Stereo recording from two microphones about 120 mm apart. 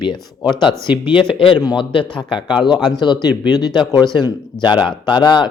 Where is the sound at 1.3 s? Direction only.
45° left (ahead or behind).